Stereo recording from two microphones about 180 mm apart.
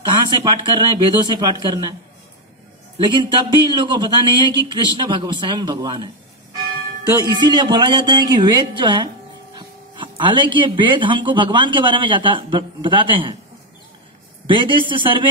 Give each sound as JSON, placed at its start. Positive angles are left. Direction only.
{"t": 0.0, "sound": "a man's voice", "side_deg": -25}
{"t": 3.0, "sound": "a man's voice", "side_deg": -25}
{"t": 7.2, "sound": "a man's voice", "side_deg": -25}
{"t": 14.4, "sound": "a man's voice", "side_deg": -25}